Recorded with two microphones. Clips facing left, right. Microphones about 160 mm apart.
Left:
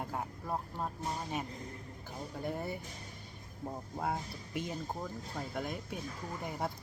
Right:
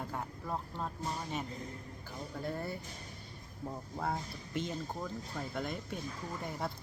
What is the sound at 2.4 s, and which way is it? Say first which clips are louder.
Speech: left 1 dB; 20° left (ahead or behind).